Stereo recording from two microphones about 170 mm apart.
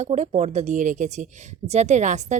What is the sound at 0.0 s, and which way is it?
Speech, 40° right (ahead or behind).